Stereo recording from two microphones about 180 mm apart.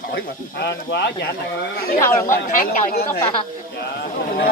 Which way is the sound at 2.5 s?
50° left (ahead or behind).